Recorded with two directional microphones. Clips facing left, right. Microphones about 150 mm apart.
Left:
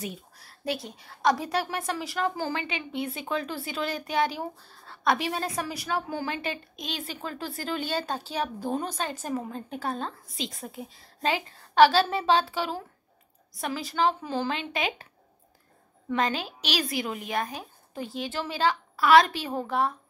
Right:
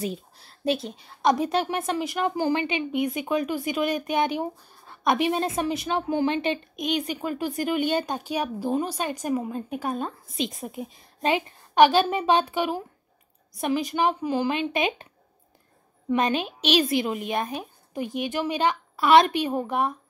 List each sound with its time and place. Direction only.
0.0 s a woman's voice: 25° right (ahead or behind)
16.1 s a woman's voice: 20° right (ahead or behind)